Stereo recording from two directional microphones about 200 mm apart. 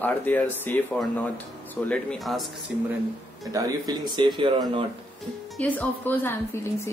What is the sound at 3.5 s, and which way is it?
Speech, 20° right (ahead or behind).